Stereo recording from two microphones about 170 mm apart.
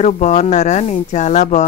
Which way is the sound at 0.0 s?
40° left (ahead or behind).